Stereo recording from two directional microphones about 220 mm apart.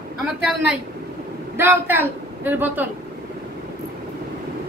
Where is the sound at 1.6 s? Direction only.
10° right (ahead or behind).